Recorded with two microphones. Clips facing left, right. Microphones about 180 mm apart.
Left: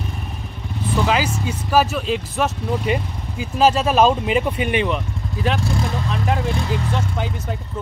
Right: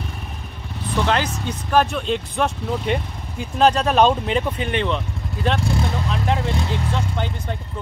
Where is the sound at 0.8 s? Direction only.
5° left (ahead or behind).